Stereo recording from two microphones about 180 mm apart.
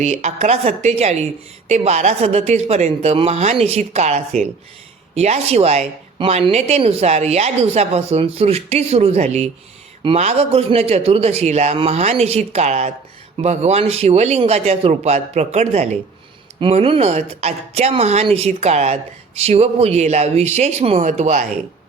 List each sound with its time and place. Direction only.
0.0 s a woman's voice: 40° right (ahead or behind)